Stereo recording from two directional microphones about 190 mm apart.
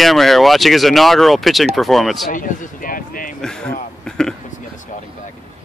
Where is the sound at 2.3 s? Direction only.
45° left (ahead or behind).